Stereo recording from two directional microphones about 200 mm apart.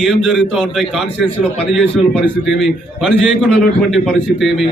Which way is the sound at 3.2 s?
Centre (ahead or behind).